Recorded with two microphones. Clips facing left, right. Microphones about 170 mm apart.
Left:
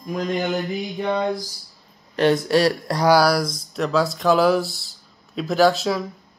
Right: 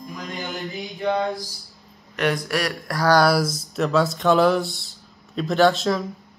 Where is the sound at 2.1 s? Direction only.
25° left (ahead or behind).